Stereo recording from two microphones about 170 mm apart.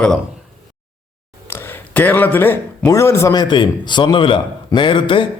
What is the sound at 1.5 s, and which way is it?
Speech, 15° left (ahead or behind).